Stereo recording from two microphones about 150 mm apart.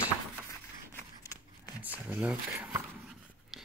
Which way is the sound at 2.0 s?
10° right (ahead or behind).